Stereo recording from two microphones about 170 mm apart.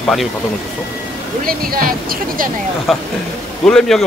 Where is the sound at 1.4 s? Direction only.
60° right (ahead or behind).